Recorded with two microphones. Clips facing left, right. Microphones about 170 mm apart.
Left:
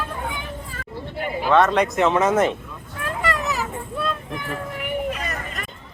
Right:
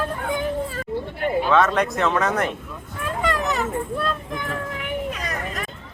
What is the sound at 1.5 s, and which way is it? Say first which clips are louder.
Speech: left 4 dB; 10° left (ahead or behind).